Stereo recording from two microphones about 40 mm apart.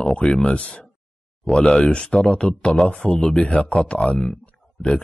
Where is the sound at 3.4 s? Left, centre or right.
Left.